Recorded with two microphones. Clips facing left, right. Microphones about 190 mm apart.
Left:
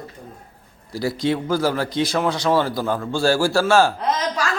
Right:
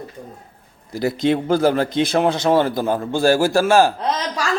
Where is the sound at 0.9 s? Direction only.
20° right (ahead or behind).